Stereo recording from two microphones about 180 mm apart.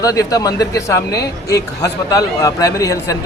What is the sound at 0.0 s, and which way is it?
A man's voice, 20° left (ahead or behind).